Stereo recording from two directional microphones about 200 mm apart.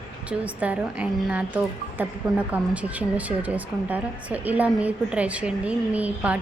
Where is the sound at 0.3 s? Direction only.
5° right (ahead or behind).